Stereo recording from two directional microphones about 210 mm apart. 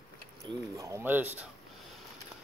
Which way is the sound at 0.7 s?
15° right (ahead or behind).